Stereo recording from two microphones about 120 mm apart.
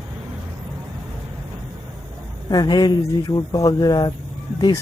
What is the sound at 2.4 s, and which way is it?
Speech, 35° left (ahead or behind).